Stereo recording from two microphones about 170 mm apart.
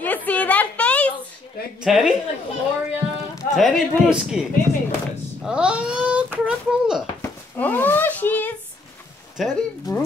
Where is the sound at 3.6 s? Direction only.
Centre (ahead or behind).